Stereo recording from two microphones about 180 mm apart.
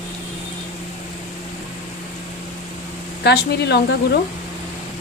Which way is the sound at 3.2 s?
70° left (ahead or behind).